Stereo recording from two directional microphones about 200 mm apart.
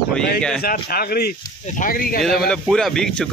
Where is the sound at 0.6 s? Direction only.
50° left (ahead or behind).